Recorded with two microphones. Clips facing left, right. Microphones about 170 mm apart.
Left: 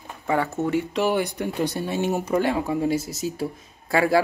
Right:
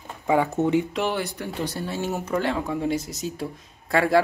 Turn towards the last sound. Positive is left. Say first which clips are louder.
# even
turn(degrees=5)  # may be behind; listen again after turning